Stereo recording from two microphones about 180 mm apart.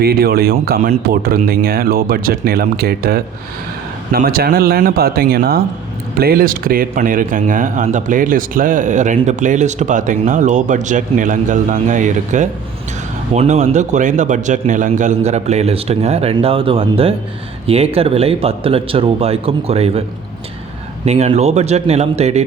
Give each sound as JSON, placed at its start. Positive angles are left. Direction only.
{"t": 0.0, "sound": "a man's voice", "side_deg": -60}